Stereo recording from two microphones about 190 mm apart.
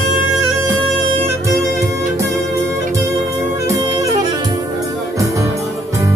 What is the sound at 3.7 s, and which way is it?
Music, 15° right (ahead or behind).